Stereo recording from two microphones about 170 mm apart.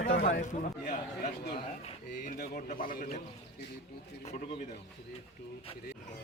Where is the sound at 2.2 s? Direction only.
60° left (ahead or behind).